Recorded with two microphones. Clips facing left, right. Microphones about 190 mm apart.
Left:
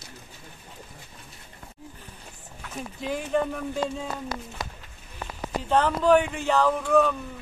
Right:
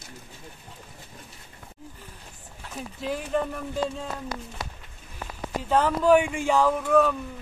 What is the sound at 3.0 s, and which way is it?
Speech, centre (ahead or behind).